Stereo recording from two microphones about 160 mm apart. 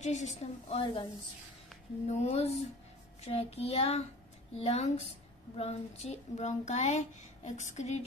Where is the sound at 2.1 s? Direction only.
40° left (ahead or behind).